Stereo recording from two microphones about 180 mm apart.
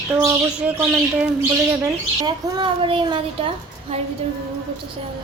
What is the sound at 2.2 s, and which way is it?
A woman's voice, 30° right (ahead or behind).